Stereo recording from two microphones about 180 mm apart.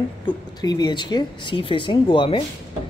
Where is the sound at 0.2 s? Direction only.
25° left (ahead or behind).